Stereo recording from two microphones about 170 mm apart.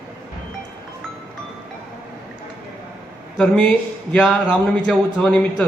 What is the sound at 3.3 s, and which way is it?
Speech, 5° left (ahead or behind).